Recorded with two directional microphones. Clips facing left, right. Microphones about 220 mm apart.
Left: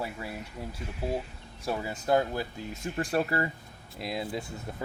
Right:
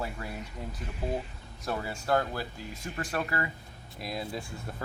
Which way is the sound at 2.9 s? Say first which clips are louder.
Left 5 dB; 30° left (ahead or behind).